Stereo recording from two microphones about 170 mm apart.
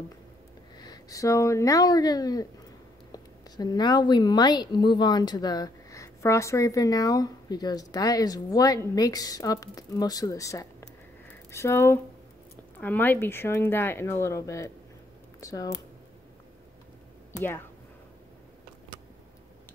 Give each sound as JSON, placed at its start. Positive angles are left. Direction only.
{"t": 0.7, "sound": "a woman's voice", "side_deg": 25}
{"t": 17.4, "sound": "speech", "side_deg": 10}